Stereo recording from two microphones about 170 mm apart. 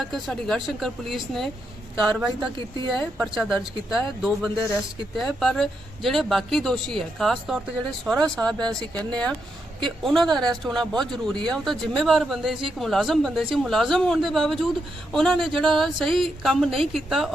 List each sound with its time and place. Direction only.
0.0 s speech: centre (ahead or behind)
2.6 s speech: 30° right (ahead or behind)
2.9 s speech: centre (ahead or behind)
9.0 s speech: 5° left (ahead or behind)